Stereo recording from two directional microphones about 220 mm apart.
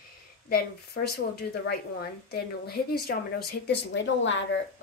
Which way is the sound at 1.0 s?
50° left (ahead or behind).